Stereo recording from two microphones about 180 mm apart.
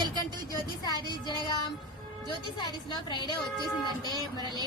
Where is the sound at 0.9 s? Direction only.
25° left (ahead or behind).